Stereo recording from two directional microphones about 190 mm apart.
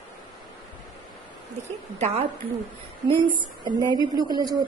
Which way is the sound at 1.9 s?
35° right (ahead or behind).